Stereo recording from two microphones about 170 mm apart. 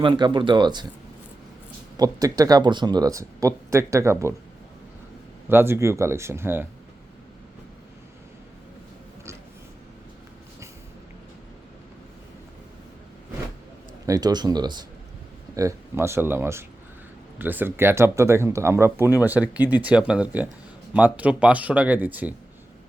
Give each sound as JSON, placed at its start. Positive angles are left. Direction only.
{"t": 0.0, "sound": "speech", "side_deg": -30}
{"t": 2.0, "sound": "speech", "side_deg": -20}
{"t": 5.5, "sound": "speech", "side_deg": -15}
{"t": 14.1, "sound": "speech", "side_deg": -20}